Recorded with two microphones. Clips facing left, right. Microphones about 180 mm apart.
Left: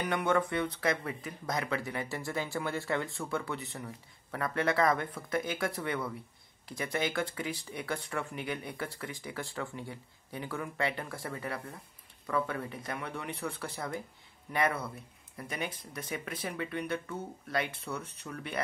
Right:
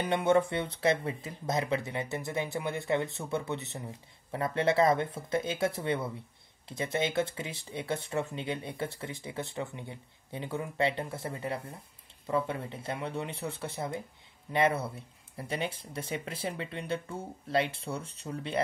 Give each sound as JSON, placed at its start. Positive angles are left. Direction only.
{"t": 0.0, "sound": "speech", "side_deg": -25}